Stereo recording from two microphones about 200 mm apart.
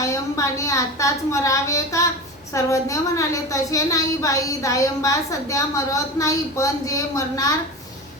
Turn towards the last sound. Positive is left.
turn(degrees=15)  # may be behind; listen again after turning